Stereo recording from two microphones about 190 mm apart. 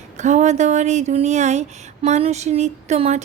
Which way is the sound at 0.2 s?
40° right (ahead or behind).